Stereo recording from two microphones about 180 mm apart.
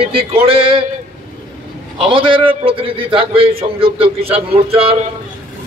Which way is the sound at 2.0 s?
30° right (ahead or behind).